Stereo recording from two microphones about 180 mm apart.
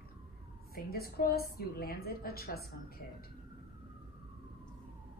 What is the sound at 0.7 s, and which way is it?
A woman's voice, 55° left (ahead or behind).